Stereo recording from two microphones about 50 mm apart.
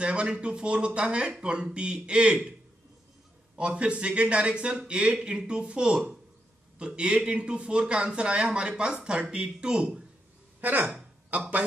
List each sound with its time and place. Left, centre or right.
0.0 s a man's voice: right
3.5 s a man's voice: right
10.6 s speech: right